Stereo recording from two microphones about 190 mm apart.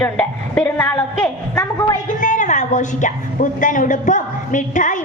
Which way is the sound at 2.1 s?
40° left (ahead or behind).